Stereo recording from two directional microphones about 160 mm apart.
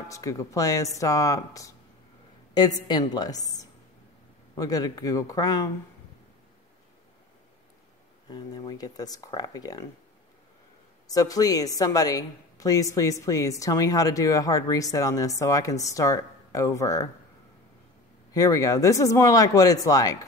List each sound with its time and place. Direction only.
0.1 s a woman's voice: 20° left (ahead or behind)
8.3 s a woman's voice: 30° left (ahead or behind)
11.1 s a woman's voice: 20° left (ahead or behind)
18.3 s a woman's voice: 20° left (ahead or behind)